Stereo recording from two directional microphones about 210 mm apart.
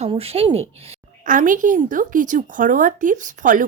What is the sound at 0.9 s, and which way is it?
A woman's voice, 40° right (ahead or behind).